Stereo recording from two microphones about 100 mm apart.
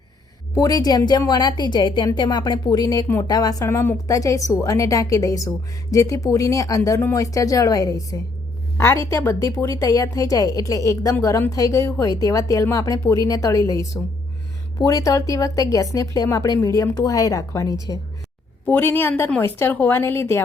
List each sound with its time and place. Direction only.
0.5 s a woman's voice: 40° left (ahead or behind)
3.7 s a woman's voice: 25° left (ahead or behind)
4.0 s a woman's voice: 35° left (ahead or behind)
18.6 s a woman's voice: 20° left (ahead or behind)